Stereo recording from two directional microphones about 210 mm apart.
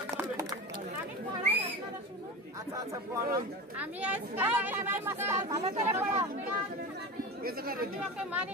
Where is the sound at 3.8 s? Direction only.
5° right (ahead or behind).